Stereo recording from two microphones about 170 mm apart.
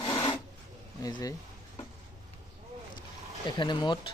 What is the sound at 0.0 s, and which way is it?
Filing, 25° left (ahead or behind).